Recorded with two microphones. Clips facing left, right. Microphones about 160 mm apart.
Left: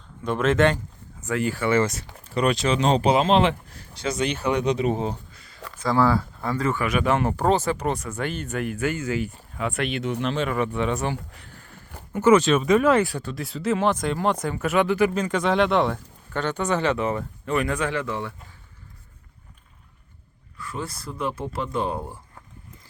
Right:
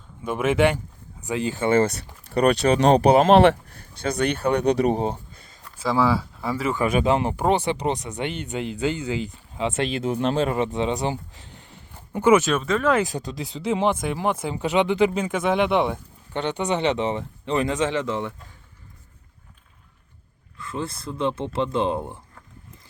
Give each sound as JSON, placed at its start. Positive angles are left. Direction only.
{"t": 0.3, "sound": "speech", "side_deg": -10}
{"t": 2.5, "sound": "speech", "side_deg": -55}
{"t": 4.6, "sound": "speech", "side_deg": -35}
{"t": 5.8, "sound": "speech", "side_deg": 0}
{"t": 6.7, "sound": "speech", "side_deg": -25}
{"t": 10.8, "sound": "a sound", "side_deg": -20}
{"t": 12.6, "sound": "speech", "side_deg": 15}
{"t": 13.0, "sound": "speech", "side_deg": -15}
{"t": 20.6, "sound": "speech", "side_deg": -25}